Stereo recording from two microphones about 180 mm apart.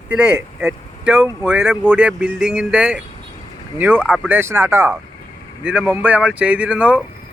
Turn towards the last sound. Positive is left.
turn(degrees=-5)  # may be behind; listen again after turning